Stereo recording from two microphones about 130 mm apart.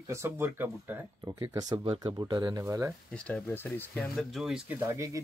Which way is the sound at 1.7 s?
45° right (ahead or behind).